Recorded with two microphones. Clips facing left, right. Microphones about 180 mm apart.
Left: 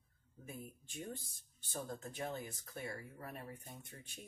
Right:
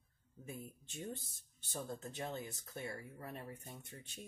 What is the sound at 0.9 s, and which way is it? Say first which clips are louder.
Speech: right 1 dB; 20° right (ahead or behind).